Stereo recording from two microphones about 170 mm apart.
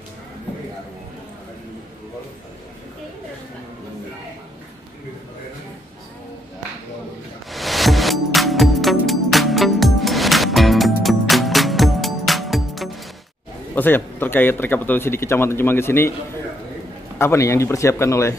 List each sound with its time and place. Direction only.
7.5 s music: centre (ahead or behind)
13.7 s a man's voice: 10° left (ahead or behind)
17.2 s a man's voice: 15° left (ahead or behind)